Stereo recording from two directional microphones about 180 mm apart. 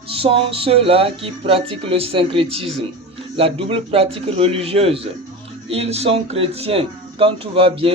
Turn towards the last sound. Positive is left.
turn(degrees=-30)  # may be behind; listen again after turning